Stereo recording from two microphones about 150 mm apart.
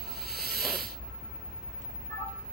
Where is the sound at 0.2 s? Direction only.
90° right.